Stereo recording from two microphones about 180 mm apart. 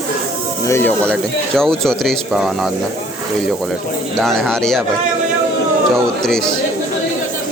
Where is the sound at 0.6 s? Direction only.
15° left (ahead or behind); by 2.7 s centre (ahead or behind).